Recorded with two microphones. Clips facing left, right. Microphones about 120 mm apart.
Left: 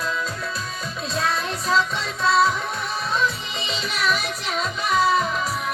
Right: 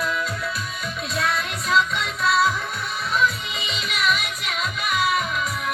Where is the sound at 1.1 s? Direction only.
30° left (ahead or behind).